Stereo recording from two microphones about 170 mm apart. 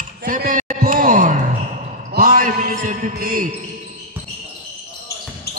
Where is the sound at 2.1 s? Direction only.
60° right (ahead or behind).